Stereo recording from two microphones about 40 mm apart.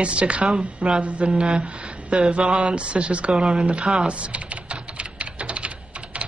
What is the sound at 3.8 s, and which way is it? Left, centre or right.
Typing, right.